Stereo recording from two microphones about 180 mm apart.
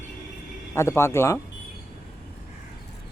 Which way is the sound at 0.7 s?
15° left (ahead or behind).